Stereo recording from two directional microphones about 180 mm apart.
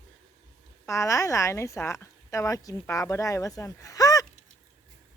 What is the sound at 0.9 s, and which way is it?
A woman's voice, 15° left (ahead or behind).